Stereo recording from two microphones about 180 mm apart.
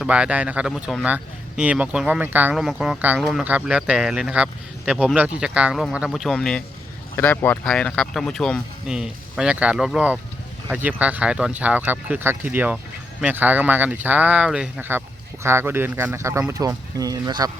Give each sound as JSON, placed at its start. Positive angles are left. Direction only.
{"t": 0.0, "sound": "speech", "side_deg": -5}